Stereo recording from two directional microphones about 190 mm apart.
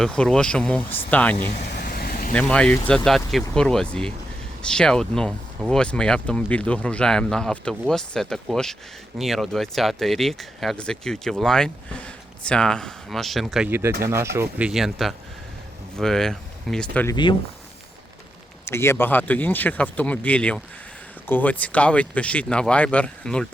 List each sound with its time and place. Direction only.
0.0 s speech: 5° left (ahead or behind)
1.5 s vehicle: 50° left (ahead or behind)
2.3 s speech: 5° left (ahead or behind)
13.7 s speech: 10° right (ahead or behind)
14.7 s speech: centre (ahead or behind)
18.6 s speech: 15° left (ahead or behind)